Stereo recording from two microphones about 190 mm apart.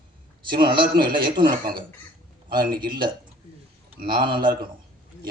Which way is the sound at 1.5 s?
50° right (ahead or behind).